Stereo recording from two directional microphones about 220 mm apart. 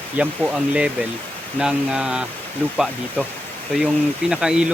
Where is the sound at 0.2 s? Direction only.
5° right (ahead or behind).